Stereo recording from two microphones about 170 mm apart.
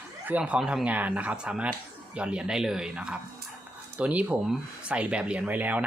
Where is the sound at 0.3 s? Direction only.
10° right (ahead or behind).